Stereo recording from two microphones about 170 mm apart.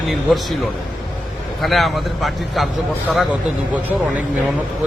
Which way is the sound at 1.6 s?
Centre (ahead or behind).